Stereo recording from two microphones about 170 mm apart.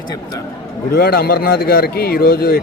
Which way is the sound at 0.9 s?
65° left (ahead or behind).